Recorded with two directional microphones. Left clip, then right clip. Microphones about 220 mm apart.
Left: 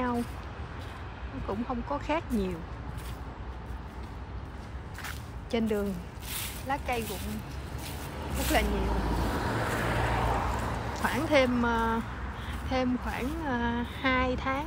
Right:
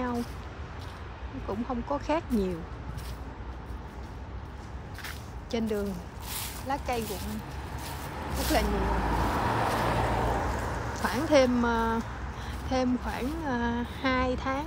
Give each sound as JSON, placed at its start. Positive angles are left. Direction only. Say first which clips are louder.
{"t": 1.5, "sound": "speech", "louder": "right 1 dB", "side_deg": -10}
{"t": 5.0, "sound": "squish", "louder": "even", "side_deg": -5}
{"t": 6.3, "sound": "a sound", "louder": "even", "side_deg": -5}
{"t": 8.2, "sound": "vehicle", "louder": "even", "side_deg": -5}
{"t": 9.8, "sound": "vehicle", "louder": "right 1 dB", "side_deg": -45}
{"t": 11.0, "sound": "speech", "louder": "right 2 dB", "side_deg": -5}